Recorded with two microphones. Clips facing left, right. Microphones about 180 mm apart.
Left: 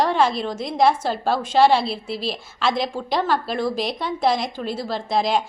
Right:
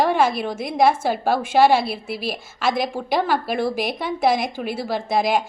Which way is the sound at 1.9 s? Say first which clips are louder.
Even; 55° right (ahead or behind).